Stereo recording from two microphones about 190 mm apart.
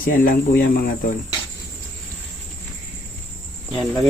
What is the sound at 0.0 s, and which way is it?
Speech, 45° left (ahead or behind).